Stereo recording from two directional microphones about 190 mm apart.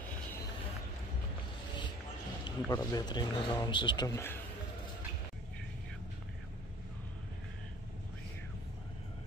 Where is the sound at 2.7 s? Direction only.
20° left (ahead or behind).